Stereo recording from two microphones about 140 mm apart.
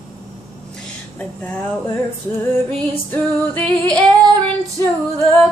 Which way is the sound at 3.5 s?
10° left (ahead or behind).